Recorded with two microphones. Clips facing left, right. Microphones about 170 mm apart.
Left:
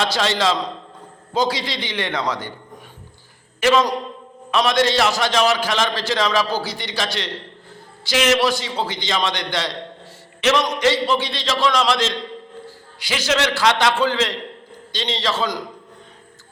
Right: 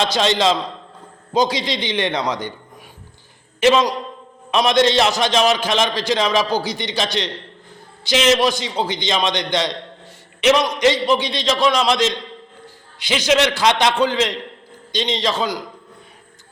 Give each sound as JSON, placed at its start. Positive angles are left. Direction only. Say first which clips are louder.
{"t": 0.0, "sound": "a man's voice", "louder": "right 3 dB", "side_deg": -20}
{"t": 3.6, "sound": "a man's voice", "louder": "right 2 dB", "side_deg": -20}